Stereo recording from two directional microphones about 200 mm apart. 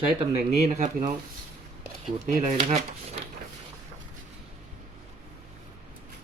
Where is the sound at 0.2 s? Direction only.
35° right (ahead or behind).